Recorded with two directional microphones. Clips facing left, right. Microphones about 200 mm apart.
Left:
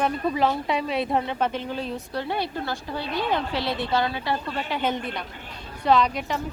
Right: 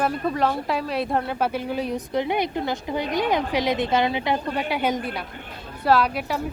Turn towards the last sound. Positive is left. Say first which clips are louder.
# right 1 dB
turn(degrees=-5)  # may be behind; listen again after turning